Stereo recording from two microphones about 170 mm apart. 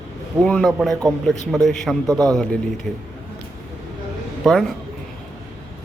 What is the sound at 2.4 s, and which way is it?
Speech, 5° left (ahead or behind).